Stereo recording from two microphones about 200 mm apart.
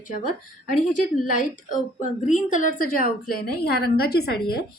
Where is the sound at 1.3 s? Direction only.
40° left (ahead or behind).